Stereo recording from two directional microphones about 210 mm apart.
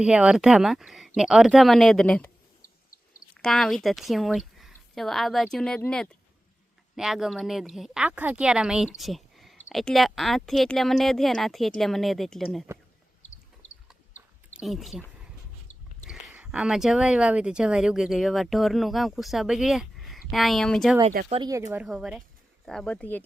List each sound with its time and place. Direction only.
0.0 s speech: 5° right (ahead or behind)
3.3 s a woman's voice: 5° left (ahead or behind)
14.6 s speech: centre (ahead or behind)
16.0 s speech: 5° right (ahead or behind)
21.2 s speech: 25° right (ahead or behind)
21.7 s speech: 5° right (ahead or behind)